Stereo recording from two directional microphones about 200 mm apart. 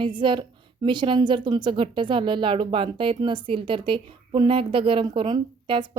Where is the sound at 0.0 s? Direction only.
25° right (ahead or behind).